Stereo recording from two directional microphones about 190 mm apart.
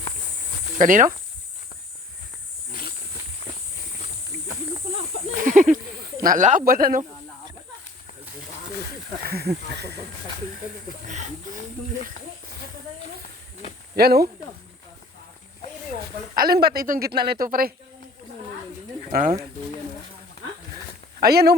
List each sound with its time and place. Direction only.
0.8 s speech: 45° right (ahead or behind)
3.4 s walk: 30° left (ahead or behind)
5.4 s a sound: 45° right (ahead or behind)
6.2 s speech: 40° right (ahead or behind)
9.2 s speech: 55° right (ahead or behind)
11.0 s speech: 40° right (ahead or behind)
13.9 s speech: 55° right (ahead or behind)
16.3 s speech: 50° right (ahead or behind)
21.2 s speech: 55° right (ahead or behind)